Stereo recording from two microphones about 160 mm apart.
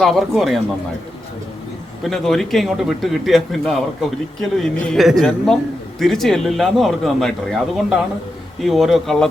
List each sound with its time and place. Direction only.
0.0 s speech: centre (ahead or behind)
2.0 s speech: centre (ahead or behind)